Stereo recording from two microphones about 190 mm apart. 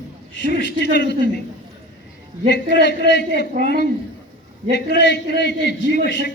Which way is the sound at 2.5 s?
65° left (ahead or behind).